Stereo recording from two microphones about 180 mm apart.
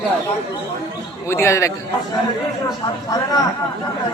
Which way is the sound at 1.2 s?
15° left (ahead or behind).